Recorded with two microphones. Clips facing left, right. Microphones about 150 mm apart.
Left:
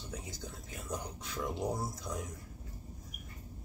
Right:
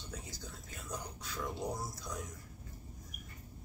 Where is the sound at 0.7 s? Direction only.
20° left (ahead or behind).